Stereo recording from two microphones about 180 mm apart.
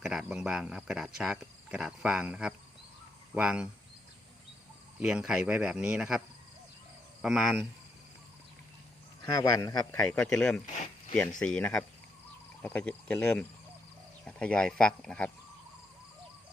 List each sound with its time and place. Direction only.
0.0 s speech: 5° right (ahead or behind)
4.9 s speech: 5° right (ahead or behind)
9.2 s a man's voice: 20° left (ahead or behind)
10.0 s a man's voice: 5° left (ahead or behind)